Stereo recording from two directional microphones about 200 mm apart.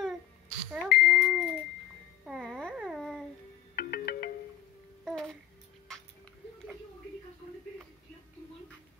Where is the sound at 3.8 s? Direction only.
50° left (ahead or behind).